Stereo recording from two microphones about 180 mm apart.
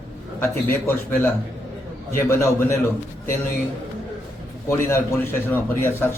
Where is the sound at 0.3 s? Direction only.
10° left (ahead or behind).